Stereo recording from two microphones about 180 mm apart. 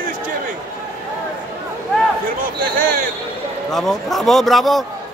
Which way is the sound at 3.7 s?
Centre (ahead or behind).